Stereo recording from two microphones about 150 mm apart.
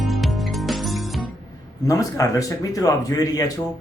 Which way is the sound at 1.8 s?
25° left (ahead or behind).